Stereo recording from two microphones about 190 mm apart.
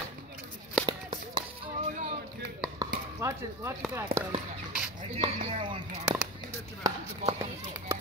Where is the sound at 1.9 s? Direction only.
40° right (ahead or behind).